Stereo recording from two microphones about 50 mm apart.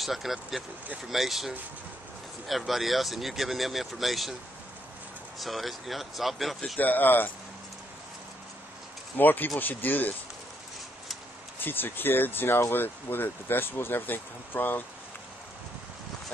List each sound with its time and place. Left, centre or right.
0.0 s speech: centre
5.4 s speech: centre
6.8 s speech: left
9.2 s speech: left
11.6 s speech: left